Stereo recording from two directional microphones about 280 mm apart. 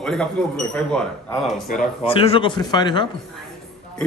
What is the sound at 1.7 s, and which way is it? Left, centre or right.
Speech, centre.